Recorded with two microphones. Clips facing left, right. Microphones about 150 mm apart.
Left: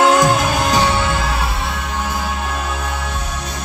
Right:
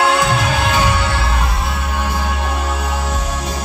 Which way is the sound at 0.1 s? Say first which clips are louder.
Left 2 dB; 45° left (ahead or behind).